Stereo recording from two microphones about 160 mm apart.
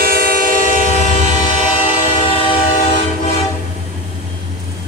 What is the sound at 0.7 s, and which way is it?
Train, 45° left (ahead or behind).